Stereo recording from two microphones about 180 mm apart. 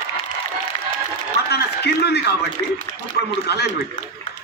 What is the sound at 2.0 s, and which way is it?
Speech, 65° left (ahead or behind).